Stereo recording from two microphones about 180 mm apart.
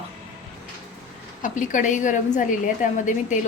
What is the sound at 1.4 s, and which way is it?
A woman's voice, 45° left (ahead or behind).